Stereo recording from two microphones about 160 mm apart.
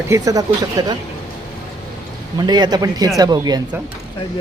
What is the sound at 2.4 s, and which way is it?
Speech, 25° right (ahead or behind).